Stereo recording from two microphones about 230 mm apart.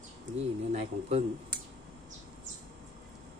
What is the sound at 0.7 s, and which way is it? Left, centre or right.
Speech, right.